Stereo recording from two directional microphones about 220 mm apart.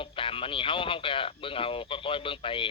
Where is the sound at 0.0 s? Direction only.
25° left (ahead or behind).